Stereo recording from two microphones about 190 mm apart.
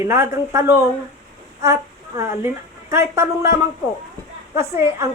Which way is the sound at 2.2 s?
15° right (ahead or behind).